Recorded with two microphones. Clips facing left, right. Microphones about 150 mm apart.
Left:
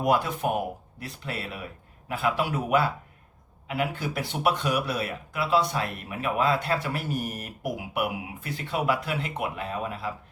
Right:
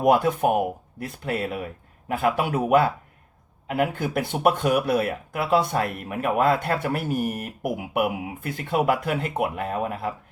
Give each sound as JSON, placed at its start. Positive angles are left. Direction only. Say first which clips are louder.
{"t": 0.0, "sound": "speech", "louder": "right 6 dB", "side_deg": -50}